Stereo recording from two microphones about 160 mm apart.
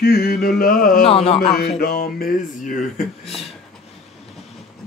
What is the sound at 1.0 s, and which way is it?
Speech, 40° left (ahead or behind).